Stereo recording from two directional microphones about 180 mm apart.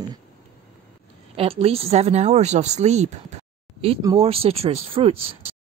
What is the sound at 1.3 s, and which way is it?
A woman's voice, 35° right (ahead or behind).